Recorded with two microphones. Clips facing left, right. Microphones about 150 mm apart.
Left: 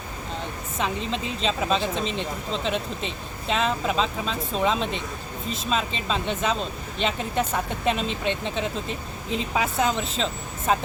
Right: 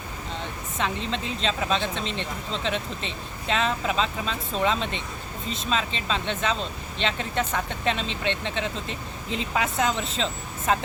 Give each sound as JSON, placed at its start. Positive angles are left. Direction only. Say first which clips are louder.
{"t": 0.8, "sound": "speech", "louder": "left 1 dB", "side_deg": 5}